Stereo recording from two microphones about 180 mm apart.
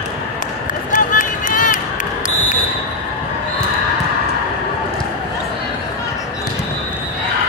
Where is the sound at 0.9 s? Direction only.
50° left (ahead or behind).